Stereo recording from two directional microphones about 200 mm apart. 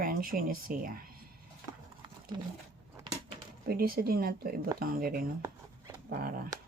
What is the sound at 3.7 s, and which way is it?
Speech, 50° right (ahead or behind).